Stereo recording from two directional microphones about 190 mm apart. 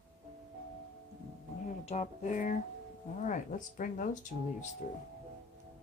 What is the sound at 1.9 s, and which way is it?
Speech, 40° left (ahead or behind).